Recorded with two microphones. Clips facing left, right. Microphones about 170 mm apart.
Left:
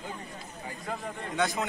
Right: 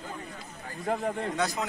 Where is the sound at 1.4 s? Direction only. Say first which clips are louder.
Left 1 dB; centre (ahead or behind).